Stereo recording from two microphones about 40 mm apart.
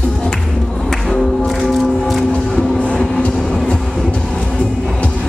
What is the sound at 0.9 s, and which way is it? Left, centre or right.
Music, centre.